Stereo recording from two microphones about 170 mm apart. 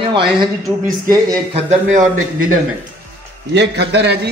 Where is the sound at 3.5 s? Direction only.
85° right.